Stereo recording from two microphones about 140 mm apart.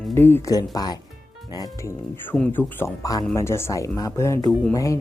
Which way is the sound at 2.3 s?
10° left (ahead or behind).